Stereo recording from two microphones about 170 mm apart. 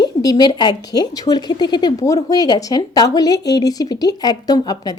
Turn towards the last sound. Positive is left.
turn(degrees=25)  # may be behind; listen again after turning